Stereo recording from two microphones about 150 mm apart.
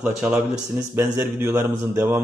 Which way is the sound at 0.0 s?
10° right (ahead or behind).